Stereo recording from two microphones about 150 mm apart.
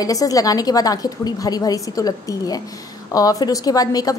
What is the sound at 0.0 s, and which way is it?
A woman's voice, 25° left (ahead or behind).